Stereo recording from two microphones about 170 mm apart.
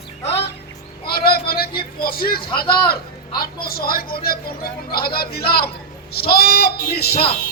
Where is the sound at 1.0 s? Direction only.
65° left (ahead or behind).